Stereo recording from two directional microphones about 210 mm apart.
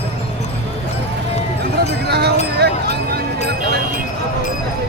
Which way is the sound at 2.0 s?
50° right (ahead or behind).